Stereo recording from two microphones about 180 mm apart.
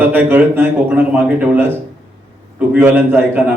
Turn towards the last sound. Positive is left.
turn(degrees=-10)  # may be behind; listen again after turning